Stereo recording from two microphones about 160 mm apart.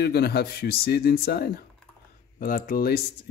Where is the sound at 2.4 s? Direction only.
60° left (ahead or behind).